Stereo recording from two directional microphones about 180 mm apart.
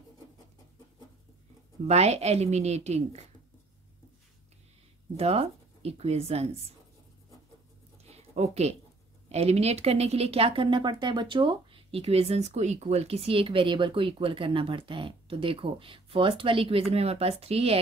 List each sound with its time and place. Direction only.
1.9 s speech: 35° right (ahead or behind)
5.1 s speech: 35° right (ahead or behind)
8.0 s a sound: 35° right (ahead or behind)
9.3 s speech: 35° right (ahead or behind)